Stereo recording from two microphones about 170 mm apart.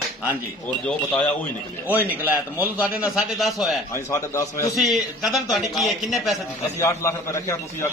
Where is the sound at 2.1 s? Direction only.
10° right (ahead or behind).